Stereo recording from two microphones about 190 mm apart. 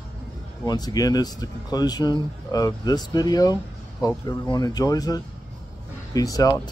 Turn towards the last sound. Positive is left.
turn(degrees=20)  # may be behind; listen again after turning